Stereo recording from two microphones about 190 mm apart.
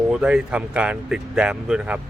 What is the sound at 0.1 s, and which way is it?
Speech, 5° right (ahead or behind).